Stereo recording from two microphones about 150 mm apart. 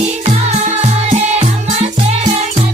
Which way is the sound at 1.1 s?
45° right (ahead or behind).